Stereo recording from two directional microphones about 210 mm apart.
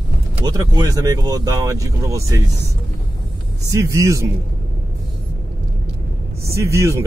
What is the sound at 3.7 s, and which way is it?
Speech, 15° right (ahead or behind).